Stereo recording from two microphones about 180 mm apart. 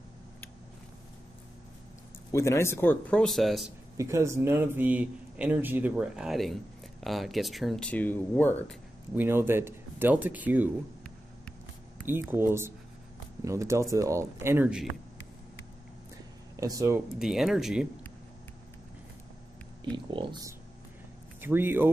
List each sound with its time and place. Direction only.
2.3 s speech: 15° left (ahead or behind)
3.9 s a man's voice: 15° right (ahead or behind); by 8.7 s 10° left (ahead or behind)
9.1 s speech: 10° right (ahead or behind)
12.1 s speech: 10° right (ahead or behind)
16.5 s speech: 20° right (ahead or behind)
17.2 s a man's voice: centre (ahead or behind)
20.1 s speech: 25° right (ahead or behind)
21.4 s speech: 10° right (ahead or behind)